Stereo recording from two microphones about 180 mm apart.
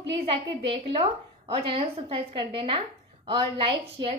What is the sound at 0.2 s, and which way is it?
A woman's voice, 30° right (ahead or behind).